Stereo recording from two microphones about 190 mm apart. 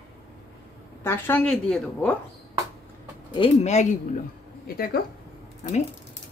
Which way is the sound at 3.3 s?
30° left (ahead or behind).